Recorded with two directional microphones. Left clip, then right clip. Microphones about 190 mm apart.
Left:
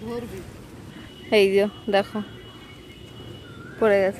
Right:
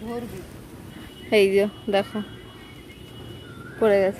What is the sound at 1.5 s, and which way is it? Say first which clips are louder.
Speech: left 1 dB; centre (ahead or behind).